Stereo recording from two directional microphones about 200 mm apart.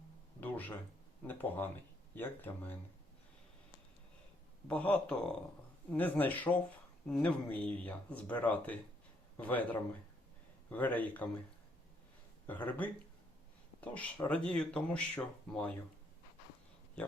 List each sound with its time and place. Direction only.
0.3 s a sound: 10° left (ahead or behind)
1.3 s speech: 10° left (ahead or behind)
4.7 s speech: 5° left (ahead or behind)
12.5 s speech: 10° left (ahead or behind)